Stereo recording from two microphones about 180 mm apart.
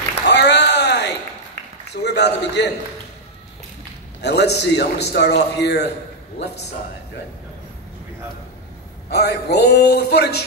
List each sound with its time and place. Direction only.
0.3 s a sound: 70° left (ahead or behind)
1.9 s a man's voice: 65° left (ahead or behind)
4.2 s a man's voice: 70° left (ahead or behind)
9.1 s a man's voice: 65° left (ahead or behind)